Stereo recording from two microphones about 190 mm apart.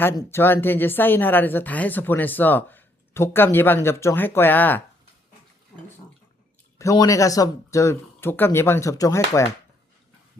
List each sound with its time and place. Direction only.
0.0 s speech: 10° left (ahead or behind)
6.7 s speech: 15° left (ahead or behind)